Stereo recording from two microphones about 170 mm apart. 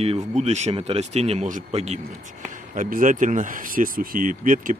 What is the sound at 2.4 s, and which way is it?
Speech, 50° right (ahead or behind).